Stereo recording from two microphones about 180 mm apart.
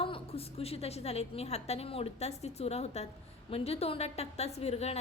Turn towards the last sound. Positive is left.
turn(degrees=35)  # may be behind; listen again after turning